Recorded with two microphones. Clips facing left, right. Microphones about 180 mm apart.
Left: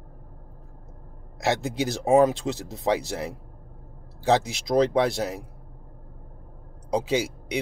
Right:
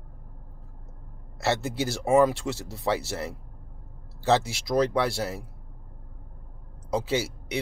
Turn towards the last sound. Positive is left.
turn(degrees=15)  # may be behind; listen again after turning